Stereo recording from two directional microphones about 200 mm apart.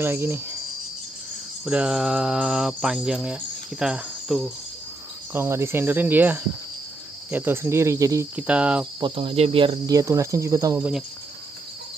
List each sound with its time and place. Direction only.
0.0 s speech: 10° right (ahead or behind)
1.7 s cricket: 5° right (ahead or behind)
5.3 s speech: 10° right (ahead or behind)
9.0 s speech: 25° right (ahead or behind)